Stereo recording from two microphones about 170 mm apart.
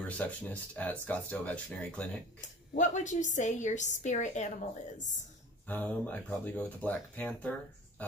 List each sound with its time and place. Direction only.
0.0 s speech: 10° left (ahead or behind)
2.4 s a woman's voice: 45° left (ahead or behind)
5.7 s speech: 10° left (ahead or behind)